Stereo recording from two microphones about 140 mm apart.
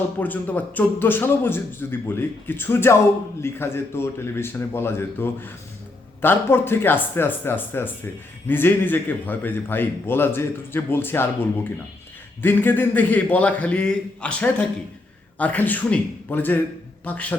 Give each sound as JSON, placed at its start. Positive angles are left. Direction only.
{"t": 0.2, "sound": "a man's voice", "side_deg": 10}